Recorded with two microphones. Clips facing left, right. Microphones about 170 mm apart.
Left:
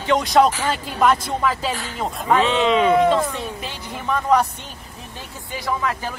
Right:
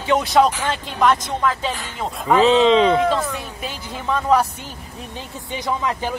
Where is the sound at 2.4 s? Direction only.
35° right (ahead or behind).